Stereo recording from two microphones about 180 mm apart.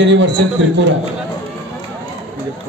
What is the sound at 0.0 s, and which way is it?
Speech, 90° right.